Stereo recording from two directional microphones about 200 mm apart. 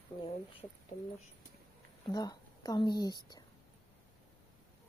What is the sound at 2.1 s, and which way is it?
A woman's voice, 20° left (ahead or behind).